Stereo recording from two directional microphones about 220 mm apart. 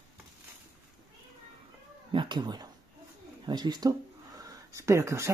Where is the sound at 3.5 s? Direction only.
20° right (ahead or behind).